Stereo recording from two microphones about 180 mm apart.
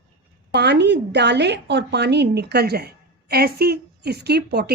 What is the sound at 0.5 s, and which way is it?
A woman's voice, 70° right (ahead or behind).